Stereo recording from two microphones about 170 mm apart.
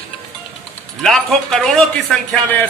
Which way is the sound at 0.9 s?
Centre (ahead or behind).